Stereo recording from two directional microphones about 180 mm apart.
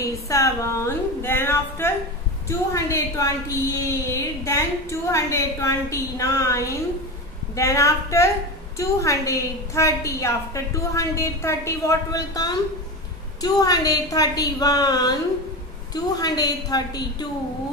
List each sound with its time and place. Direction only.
0.0 s a woman's voice: 15° left (ahead or behind)